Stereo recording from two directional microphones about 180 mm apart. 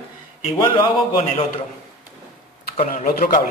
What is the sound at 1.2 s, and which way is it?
Speech, 35° left (ahead or behind).